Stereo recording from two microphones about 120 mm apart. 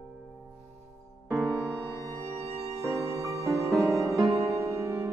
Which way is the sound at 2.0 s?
25° right (ahead or behind).